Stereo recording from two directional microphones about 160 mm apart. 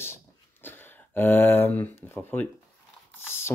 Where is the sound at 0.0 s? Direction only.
15° left (ahead or behind).